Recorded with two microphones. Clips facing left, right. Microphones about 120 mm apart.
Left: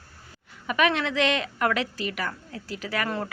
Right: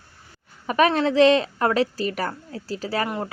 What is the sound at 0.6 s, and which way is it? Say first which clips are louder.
Speech: right 5 dB; 35° right (ahead or behind).